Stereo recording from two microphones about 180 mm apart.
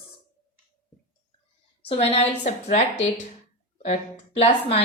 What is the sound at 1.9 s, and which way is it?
A woman's voice, 35° left (ahead or behind).